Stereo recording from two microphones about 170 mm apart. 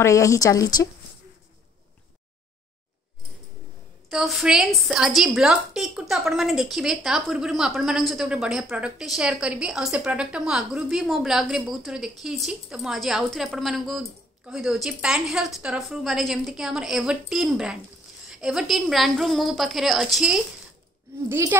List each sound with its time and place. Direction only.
0.0 s speech: 20° left (ahead or behind)
4.1 s a woman's voice: centre (ahead or behind)
21.3 s speech: 15° right (ahead or behind)